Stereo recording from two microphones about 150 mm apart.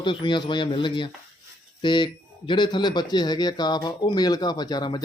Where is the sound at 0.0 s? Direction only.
30° left (ahead or behind).